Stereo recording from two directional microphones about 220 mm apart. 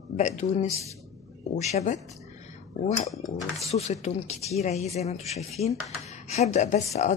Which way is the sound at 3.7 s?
30° left (ahead or behind).